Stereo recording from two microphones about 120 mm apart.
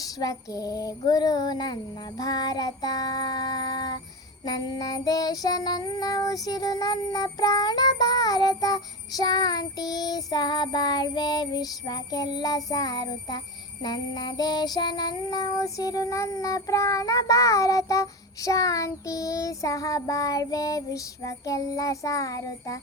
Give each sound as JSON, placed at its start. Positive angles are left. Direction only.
{"t": 0.0, "sound": "child singing", "side_deg": 30}